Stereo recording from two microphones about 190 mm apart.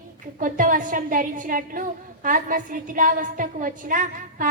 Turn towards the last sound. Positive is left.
turn(degrees=-45)  # may be behind; listen again after turning